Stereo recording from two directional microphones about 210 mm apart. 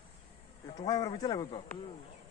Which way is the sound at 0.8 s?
20° left (ahead or behind).